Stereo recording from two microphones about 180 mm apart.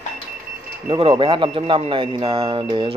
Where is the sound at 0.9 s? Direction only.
30° right (ahead or behind).